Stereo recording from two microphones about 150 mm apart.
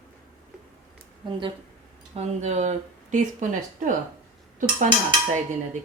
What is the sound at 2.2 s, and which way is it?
Speech, 50° right (ahead or behind).